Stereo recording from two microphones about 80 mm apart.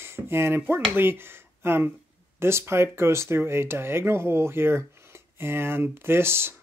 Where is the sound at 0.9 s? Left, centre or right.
Right.